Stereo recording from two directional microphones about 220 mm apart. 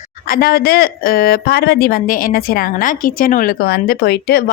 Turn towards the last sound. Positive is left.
turn(degrees=45)  # may be behind; listen again after turning